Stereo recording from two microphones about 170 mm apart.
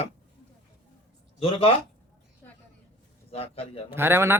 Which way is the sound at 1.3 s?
35° left (ahead or behind).